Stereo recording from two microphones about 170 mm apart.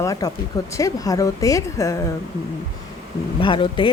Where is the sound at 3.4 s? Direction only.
30° left (ahead or behind).